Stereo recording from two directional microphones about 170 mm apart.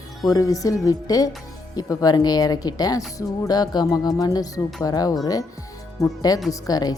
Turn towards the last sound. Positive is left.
turn(degrees=20)  # may be behind; listen again after turning